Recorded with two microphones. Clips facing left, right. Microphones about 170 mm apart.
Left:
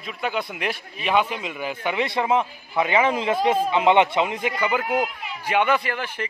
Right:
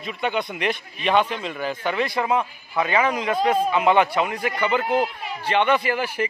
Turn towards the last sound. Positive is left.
turn(degrees=-5)  # may be behind; listen again after turning